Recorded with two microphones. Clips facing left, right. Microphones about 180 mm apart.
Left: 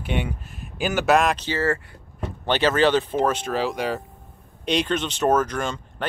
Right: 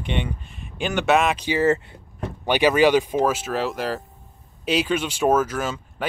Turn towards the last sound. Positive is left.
turn(degrees=-5)  # may be behind; listen again after turning